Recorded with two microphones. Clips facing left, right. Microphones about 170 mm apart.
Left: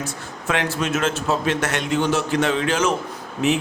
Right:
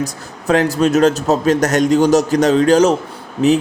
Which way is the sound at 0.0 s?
40° right (ahead or behind).